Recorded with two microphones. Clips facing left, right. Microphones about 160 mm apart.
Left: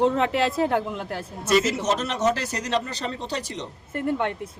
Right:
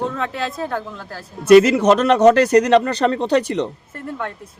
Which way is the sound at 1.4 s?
60° right (ahead or behind).